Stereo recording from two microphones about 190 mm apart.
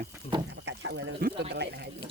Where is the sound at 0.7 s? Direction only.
85° right.